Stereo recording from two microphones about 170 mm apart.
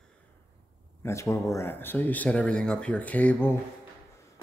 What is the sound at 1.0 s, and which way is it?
Speech, 15° left (ahead or behind).